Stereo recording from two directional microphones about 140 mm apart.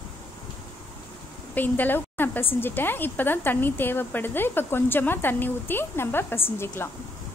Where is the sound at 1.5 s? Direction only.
15° left (ahead or behind).